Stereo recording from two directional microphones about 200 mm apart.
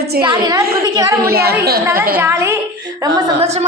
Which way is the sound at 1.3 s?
50° right (ahead or behind).